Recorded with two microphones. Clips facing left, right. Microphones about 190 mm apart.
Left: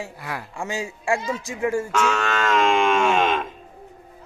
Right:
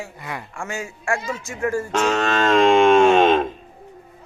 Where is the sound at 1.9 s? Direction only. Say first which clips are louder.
Right 3 dB; 30° right (ahead or behind).